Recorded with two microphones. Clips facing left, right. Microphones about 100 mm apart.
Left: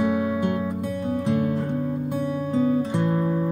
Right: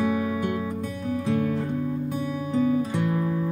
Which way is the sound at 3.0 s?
35° left (ahead or behind).